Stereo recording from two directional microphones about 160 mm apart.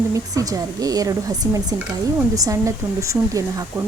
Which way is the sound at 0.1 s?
20° right (ahead or behind).